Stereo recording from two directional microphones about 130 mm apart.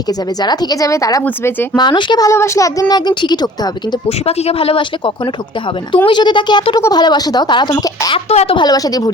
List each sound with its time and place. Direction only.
0.4 s a woman's voice: 30° left (ahead or behind)
1.7 s speech: 35° left (ahead or behind)
4.3 s a woman's voice: 50° left (ahead or behind); by 8.2 s 30° left (ahead or behind)
8.3 s a woman's voice: 50° left (ahead or behind)
8.5 s speech: 30° left (ahead or behind)